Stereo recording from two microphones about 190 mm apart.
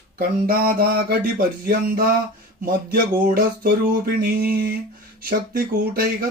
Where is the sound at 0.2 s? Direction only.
50° right (ahead or behind).